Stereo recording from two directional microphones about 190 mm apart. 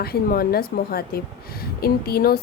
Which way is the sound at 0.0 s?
55° left (ahead or behind).